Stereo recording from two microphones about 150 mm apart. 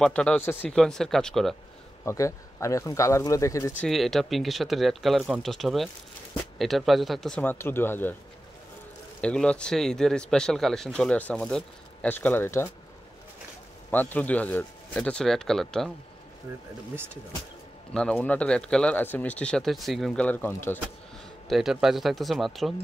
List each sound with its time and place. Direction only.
0.0 s speech: 5° left (ahead or behind)
2.0 s speech: 20° left (ahead or behind)
3.8 s speech: centre (ahead or behind)
9.2 s speech: 5° left (ahead or behind)
13.8 s speech: 10° left (ahead or behind)
17.9 s speech: 10° left (ahead or behind)
21.5 s speech: centre (ahead or behind)